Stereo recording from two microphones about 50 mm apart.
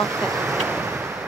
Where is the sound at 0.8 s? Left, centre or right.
Right.